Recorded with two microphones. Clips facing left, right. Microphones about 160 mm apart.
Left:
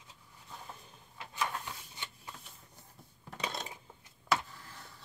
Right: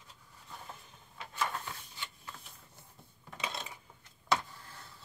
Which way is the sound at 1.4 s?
5° left (ahead or behind).